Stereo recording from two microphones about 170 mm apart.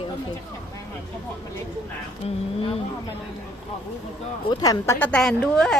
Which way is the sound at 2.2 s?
40° left (ahead or behind).